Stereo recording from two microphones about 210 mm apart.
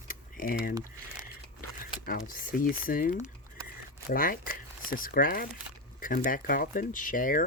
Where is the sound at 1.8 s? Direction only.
45° left (ahead or behind).